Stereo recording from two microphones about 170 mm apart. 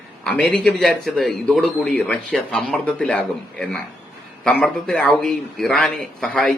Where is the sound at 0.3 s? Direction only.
5° left (ahead or behind).